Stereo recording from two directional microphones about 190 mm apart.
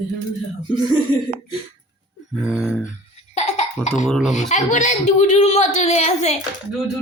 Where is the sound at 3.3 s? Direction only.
40° left (ahead or behind).